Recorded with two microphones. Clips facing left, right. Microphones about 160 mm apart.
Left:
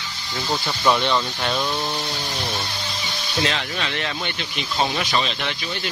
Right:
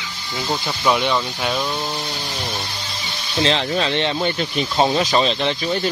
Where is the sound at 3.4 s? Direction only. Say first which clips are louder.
Right 6 dB; 30° right (ahead or behind).